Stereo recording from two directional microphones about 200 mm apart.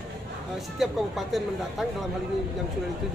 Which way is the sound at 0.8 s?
Centre (ahead or behind).